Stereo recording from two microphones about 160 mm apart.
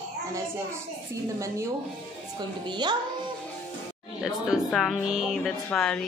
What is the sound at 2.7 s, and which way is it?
Speech, 30° right (ahead or behind).